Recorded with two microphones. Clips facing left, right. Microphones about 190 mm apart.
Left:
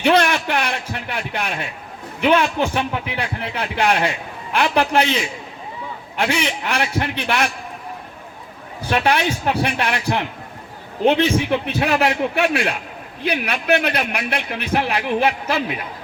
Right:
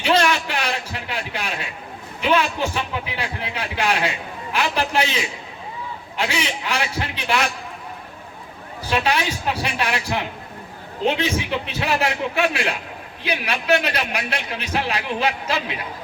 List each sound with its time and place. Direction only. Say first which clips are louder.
0.0 s a sound: left 3 dB; 55° left (ahead or behind)
2.3 s a man's voice: left 2 dB; 55° left (ahead or behind)
6.1 s a man's voice: left 4 dB; 60° left (ahead or behind)
8.9 s a man's voice: left 3 dB; 55° left (ahead or behind)